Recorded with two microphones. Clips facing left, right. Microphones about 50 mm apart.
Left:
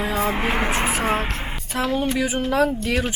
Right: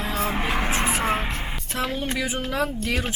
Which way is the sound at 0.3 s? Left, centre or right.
Centre.